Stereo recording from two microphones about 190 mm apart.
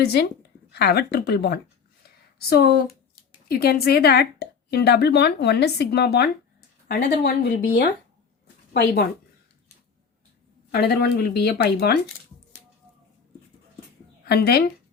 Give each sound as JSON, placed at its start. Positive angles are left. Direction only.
{"t": 0.0, "sound": "a woman's voice", "side_deg": 55}
{"t": 2.0, "sound": "a sound", "side_deg": 55}
{"t": 3.5, "sound": "a woman's voice", "side_deg": 55}
{"t": 10.7, "sound": "a woman's voice", "side_deg": 60}
{"t": 14.3, "sound": "a woman's voice", "side_deg": 55}